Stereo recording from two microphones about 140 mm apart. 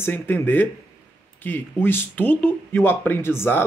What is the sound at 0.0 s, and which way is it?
Speech, 15° left (ahead or behind).